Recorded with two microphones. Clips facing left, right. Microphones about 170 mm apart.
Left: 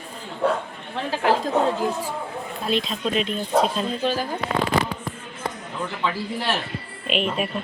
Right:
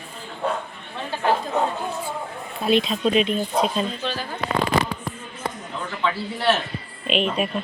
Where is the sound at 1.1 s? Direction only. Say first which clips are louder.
Left 1 dB; 90° left.